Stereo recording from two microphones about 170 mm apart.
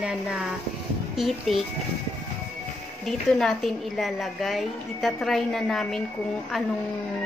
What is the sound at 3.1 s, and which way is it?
A woman's voice, centre (ahead or behind).